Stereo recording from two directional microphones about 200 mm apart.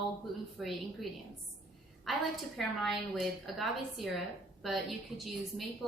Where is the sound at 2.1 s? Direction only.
Centre (ahead or behind).